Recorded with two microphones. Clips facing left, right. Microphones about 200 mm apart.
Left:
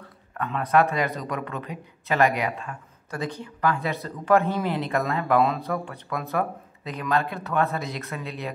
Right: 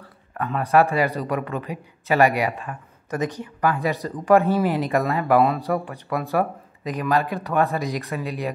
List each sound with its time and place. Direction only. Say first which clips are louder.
0.6 s speech: right 3 dB; 10° right (ahead or behind)